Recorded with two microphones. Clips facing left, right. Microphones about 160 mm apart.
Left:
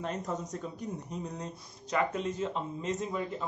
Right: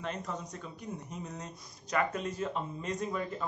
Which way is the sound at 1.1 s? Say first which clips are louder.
Left 4 dB; 30° left (ahead or behind).